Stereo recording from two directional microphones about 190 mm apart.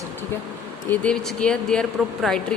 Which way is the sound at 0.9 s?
5° left (ahead or behind).